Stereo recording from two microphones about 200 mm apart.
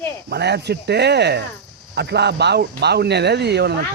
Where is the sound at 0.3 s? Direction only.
55° right (ahead or behind).